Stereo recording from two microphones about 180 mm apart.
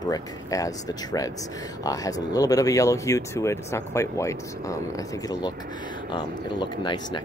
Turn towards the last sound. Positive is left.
turn(degrees=25)  # may be behind; listen again after turning